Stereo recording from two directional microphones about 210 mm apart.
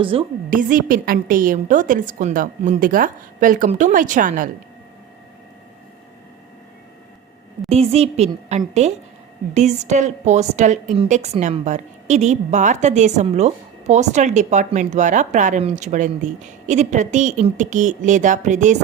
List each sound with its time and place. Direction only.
0.0 s a woman's voice: 25° right (ahead or behind)
0.5 s a woman's voice: 40° right (ahead or behind)
7.7 s a woman's voice: 30° right (ahead or behind)